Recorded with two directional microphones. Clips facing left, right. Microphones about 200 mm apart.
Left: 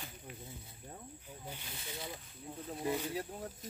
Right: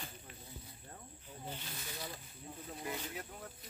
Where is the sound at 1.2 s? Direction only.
10° left (ahead or behind).